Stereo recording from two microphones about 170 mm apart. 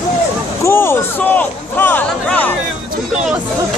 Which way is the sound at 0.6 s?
15° left (ahead or behind).